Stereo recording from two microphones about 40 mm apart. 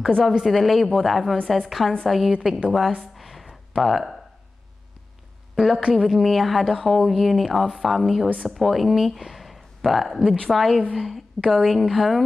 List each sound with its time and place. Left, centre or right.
0.0 s a woman's voice: centre
2.4 s a woman's voice: right
3.0 s a sound: centre
5.8 s speech: centre
6.0 s a woman's voice: centre